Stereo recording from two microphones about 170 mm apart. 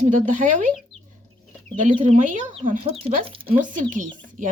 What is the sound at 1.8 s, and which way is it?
Speech, 45° right (ahead or behind).